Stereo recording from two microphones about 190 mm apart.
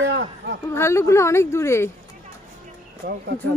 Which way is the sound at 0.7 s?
15° left (ahead or behind).